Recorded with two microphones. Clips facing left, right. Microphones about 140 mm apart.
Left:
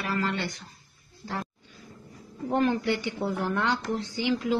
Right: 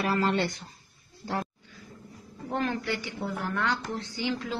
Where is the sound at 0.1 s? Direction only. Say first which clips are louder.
Right 1 dB; 30° right (ahead or behind).